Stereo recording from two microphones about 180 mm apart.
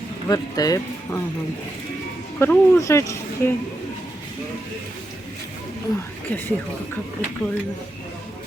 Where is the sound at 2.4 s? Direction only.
15° left (ahead or behind).